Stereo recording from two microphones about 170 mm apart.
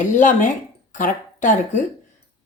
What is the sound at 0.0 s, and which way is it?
Speech, 50° left (ahead or behind).